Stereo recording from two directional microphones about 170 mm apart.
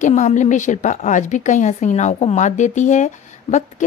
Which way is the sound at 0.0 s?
45° left (ahead or behind).